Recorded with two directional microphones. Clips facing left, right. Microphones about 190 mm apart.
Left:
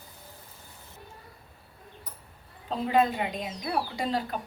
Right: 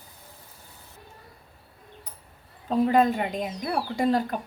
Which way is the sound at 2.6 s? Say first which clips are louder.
Right 4 dB; 45° right (ahead or behind).